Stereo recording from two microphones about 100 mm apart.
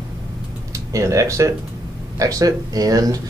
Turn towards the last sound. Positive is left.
turn(degrees=-35)  # may be behind; listen again after turning